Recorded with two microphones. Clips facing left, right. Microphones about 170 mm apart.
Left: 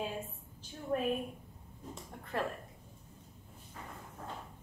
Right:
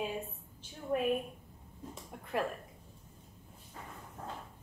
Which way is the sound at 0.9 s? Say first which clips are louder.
Right 1 dB; 10° right (ahead or behind).